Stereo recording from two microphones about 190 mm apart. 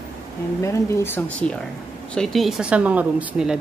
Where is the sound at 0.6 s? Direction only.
15° left (ahead or behind).